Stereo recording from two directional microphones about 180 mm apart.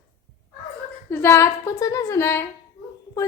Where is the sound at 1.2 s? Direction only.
15° left (ahead or behind).